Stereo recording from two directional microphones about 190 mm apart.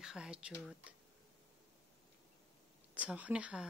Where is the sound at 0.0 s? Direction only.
5° right (ahead or behind).